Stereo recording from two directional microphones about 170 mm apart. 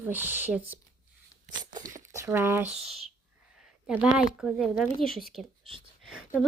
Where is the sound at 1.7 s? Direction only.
20° right (ahead or behind).